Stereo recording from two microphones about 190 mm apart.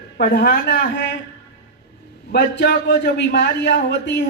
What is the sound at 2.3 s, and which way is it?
A man's voice, 60° left (ahead or behind).